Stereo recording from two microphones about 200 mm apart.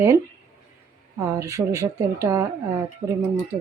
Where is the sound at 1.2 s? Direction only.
15° right (ahead or behind).